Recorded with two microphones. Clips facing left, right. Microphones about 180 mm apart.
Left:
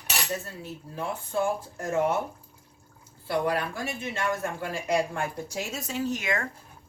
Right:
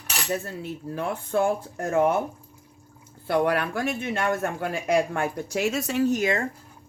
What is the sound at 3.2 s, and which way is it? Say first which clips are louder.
Speech: right 4 dB; 60° right (ahead or behind).